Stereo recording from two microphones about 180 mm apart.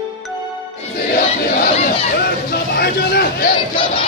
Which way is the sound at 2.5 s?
60° left (ahead or behind).